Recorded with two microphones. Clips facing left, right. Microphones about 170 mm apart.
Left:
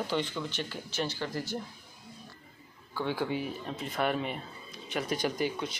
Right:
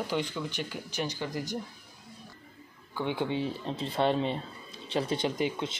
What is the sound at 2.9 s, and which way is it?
Speech, 20° right (ahead or behind).